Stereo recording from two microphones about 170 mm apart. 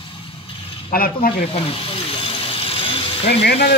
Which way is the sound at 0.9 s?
60° left (ahead or behind).